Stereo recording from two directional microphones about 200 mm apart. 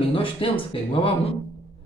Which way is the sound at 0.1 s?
25° left (ahead or behind).